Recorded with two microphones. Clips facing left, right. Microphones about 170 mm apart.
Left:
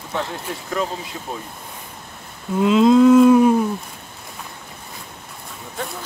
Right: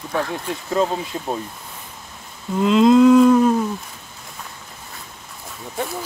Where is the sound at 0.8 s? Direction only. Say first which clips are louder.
Right 5 dB; 30° right (ahead or behind).